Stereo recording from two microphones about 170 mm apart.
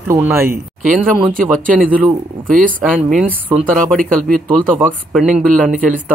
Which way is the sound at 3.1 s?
5° right (ahead or behind).